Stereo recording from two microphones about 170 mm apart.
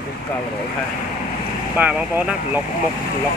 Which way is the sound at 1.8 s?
10° right (ahead or behind).